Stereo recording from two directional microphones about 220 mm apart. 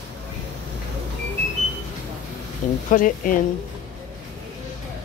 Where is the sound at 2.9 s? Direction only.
35° left (ahead or behind).